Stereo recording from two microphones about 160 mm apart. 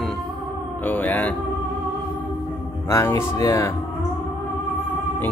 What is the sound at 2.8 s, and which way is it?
Speech, 15° left (ahead or behind).